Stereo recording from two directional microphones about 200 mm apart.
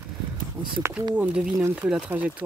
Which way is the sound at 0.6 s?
20° right (ahead or behind).